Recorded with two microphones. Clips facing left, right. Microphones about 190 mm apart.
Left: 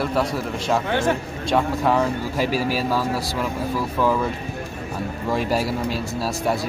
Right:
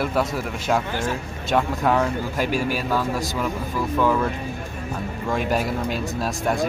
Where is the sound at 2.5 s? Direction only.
35° left (ahead or behind).